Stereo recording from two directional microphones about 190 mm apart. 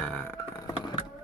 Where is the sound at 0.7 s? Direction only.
25° left (ahead or behind).